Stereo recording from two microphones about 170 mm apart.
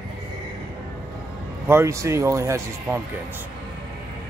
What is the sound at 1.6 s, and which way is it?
Speech, 15° right (ahead or behind).